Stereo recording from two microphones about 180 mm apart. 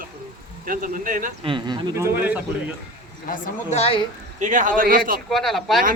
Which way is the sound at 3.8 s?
30° left (ahead or behind).